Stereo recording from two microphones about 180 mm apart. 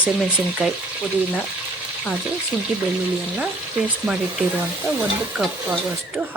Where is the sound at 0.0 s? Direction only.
5° right (ahead or behind).